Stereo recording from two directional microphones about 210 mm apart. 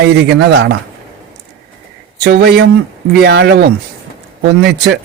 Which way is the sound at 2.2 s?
50° right (ahead or behind).